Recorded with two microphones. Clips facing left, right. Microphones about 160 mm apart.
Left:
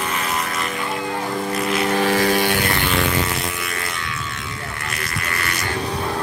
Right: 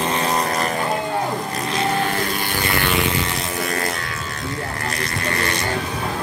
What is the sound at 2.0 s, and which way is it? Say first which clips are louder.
Music: left 5 dB; 90° left.